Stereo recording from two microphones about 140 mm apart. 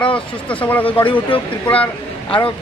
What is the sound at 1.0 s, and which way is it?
Speech, 35° left (ahead or behind).